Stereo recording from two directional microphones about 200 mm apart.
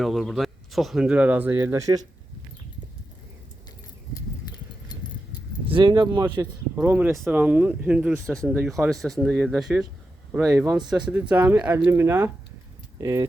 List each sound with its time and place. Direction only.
0.0 s speech: centre (ahead or behind); by 2.0 s 15° right (ahead or behind)
4.1 s horse: 20° left (ahead or behind)
5.6 s speech: 25° right (ahead or behind)
6.7 s speech: 10° right (ahead or behind)
8.3 s speech: 5° left (ahead or behind); by 13.2 s 15° right (ahead or behind)